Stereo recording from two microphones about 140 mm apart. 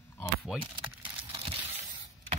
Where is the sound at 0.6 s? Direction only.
40° right (ahead or behind).